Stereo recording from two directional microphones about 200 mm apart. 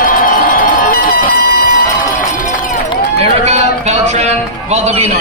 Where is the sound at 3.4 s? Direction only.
35° right (ahead or behind).